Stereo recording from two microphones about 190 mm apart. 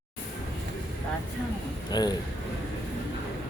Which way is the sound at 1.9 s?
20° left (ahead or behind).